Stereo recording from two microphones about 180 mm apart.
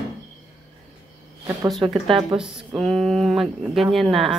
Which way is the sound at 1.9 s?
25° right (ahead or behind).